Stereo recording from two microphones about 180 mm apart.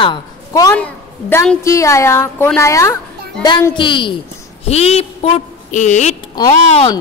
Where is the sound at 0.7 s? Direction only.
10° left (ahead or behind); by 6.2 s 40° left (ahead or behind).